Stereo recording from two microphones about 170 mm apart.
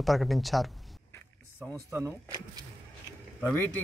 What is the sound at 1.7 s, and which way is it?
Speech, 15° right (ahead or behind).